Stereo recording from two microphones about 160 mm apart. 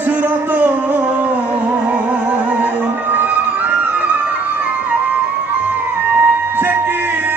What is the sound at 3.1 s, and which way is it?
Music, 10° right (ahead or behind).